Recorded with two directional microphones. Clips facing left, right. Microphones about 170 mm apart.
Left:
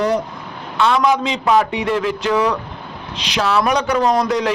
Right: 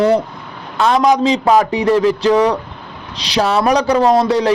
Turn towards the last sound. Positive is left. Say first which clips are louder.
# right 4 dB
turn(degrees=-30)  # may be behind; listen again after turning